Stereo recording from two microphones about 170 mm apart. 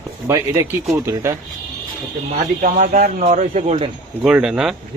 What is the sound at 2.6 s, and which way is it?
Speech, 50° right (ahead or behind).